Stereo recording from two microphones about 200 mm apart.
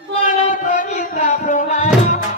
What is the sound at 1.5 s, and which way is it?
Music, 40° left (ahead or behind).